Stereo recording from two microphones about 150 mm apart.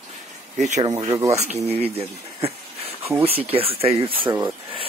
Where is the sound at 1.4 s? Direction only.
45° right (ahead or behind).